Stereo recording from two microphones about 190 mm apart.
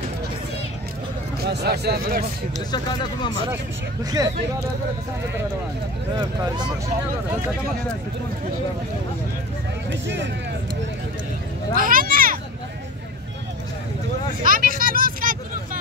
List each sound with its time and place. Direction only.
1.4 s speech: 60° right (ahead or behind)
2.7 s speech: 25° left (ahead or behind)
4.0 s speech: 20° right (ahead or behind)
9.8 s speech: 70° right (ahead or behind)
11.7 s a sound: 50° right (ahead or behind)
14.4 s speech: 45° right (ahead or behind)
15.0 s vehicle: 45° right (ahead or behind)